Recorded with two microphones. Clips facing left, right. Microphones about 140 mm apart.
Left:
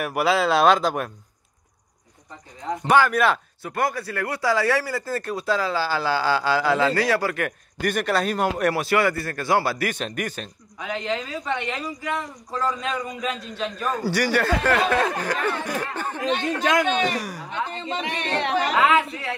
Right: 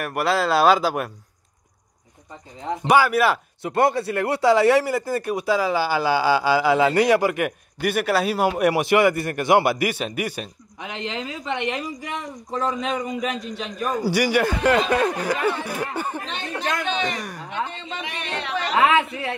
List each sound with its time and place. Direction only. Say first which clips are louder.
0.0 s speech: left 1 dB; centre (ahead or behind)
2.9 s speech: right 1 dB; 5° right (ahead or behind)
3.6 s speech: right 6 dB; 25° right (ahead or behind); by 10.5 s 10° right (ahead or behind)
10.8 s speech: left 2 dB; 20° right (ahead or behind)
16.2 s speech: left 6 dB; 90° left
17.0 s speech: left 2 dB; 5° left (ahead or behind)
17.7 s speech: left 4 dB; 35° left (ahead or behind)
18.8 s speech: right 2 dB; 25° right (ahead or behind)